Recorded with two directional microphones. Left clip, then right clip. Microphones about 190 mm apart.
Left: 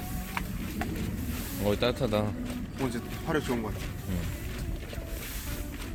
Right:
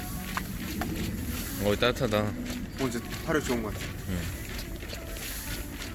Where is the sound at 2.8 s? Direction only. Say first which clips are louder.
Right 2 dB; 30° left (ahead or behind).